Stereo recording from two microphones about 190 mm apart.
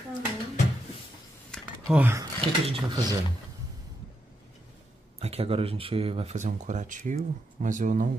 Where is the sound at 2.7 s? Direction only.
20° right (ahead or behind).